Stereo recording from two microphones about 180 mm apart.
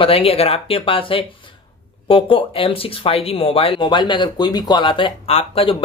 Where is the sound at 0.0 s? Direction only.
30° left (ahead or behind).